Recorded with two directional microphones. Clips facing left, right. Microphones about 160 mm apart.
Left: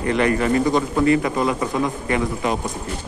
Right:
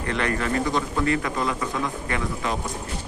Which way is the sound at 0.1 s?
15° left (ahead or behind).